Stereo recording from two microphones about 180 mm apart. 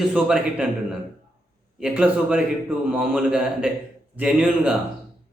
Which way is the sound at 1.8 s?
5° right (ahead or behind).